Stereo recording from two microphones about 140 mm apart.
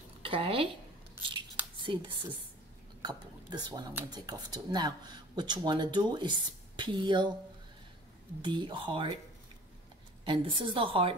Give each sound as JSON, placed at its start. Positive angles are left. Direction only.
{"t": 0.2, "sound": "speech", "side_deg": -40}
{"t": 1.8, "sound": "speech", "side_deg": -35}
{"t": 8.4, "sound": "speech", "side_deg": -35}
{"t": 10.2, "sound": "speech", "side_deg": -35}